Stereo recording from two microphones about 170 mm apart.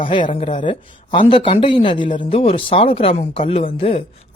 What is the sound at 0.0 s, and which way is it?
Speech, 30° left (ahead or behind).